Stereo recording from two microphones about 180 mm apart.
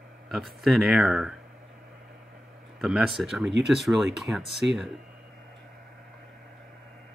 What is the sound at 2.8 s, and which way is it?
Speech, centre (ahead or behind).